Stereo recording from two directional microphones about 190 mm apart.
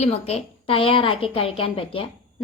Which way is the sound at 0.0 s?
35° left (ahead or behind).